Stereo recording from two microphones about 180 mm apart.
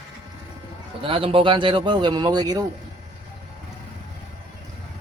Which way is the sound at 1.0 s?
30° right (ahead or behind).